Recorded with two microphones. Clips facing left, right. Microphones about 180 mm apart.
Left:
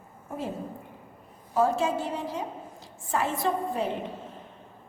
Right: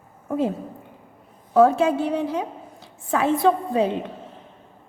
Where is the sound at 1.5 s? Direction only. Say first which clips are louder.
Right 8 dB; 60° right (ahead or behind).